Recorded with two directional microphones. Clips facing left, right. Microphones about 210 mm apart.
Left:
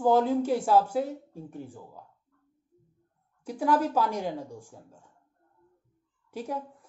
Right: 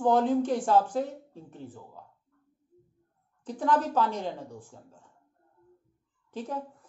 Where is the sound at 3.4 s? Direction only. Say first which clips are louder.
Left 1 dB; 10° left (ahead or behind).